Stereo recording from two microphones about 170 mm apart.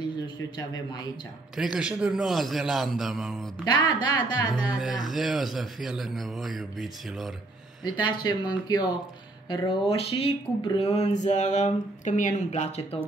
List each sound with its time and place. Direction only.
1.6 s a man's voice: 5° right (ahead or behind)
3.6 s speech: 25° left (ahead or behind)
4.6 s a man's voice: 5° right (ahead or behind)
7.8 s speech: 25° left (ahead or behind)